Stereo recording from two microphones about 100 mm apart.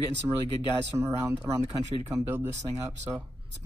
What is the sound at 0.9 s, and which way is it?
Speech, 30° right (ahead or behind).